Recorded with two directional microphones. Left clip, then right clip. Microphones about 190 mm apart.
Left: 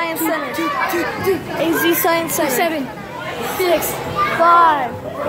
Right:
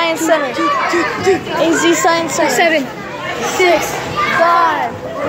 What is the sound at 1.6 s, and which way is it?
Speech, 10° left (ahead or behind).